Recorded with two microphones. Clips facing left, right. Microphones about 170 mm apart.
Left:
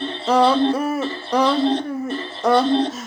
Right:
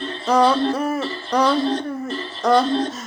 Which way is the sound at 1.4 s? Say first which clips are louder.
Left 2 dB; 25° left (ahead or behind).